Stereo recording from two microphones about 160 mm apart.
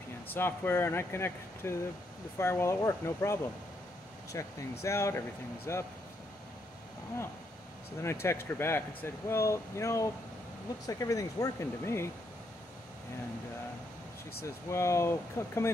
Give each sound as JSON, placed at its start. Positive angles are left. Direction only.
{"t": 0.3, "sound": "speech", "side_deg": 15}
{"t": 8.0, "sound": "speech", "side_deg": 15}
{"t": 14.4, "sound": "speech", "side_deg": 20}